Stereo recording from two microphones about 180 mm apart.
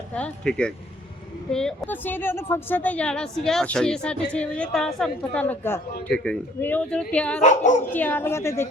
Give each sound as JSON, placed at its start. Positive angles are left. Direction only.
{"t": 0.1, "sound": "a woman's voice", "side_deg": 5}
{"t": 7.4, "sound": "speech", "side_deg": 40}
{"t": 7.9, "sound": "a woman's voice", "side_deg": 10}